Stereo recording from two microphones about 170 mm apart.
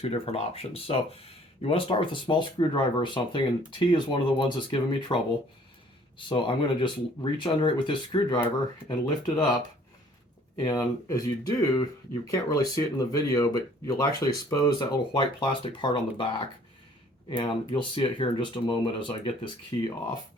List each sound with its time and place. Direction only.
0.0 s speech: 35° left (ahead or behind)
10.6 s speech: 20° left (ahead or behind)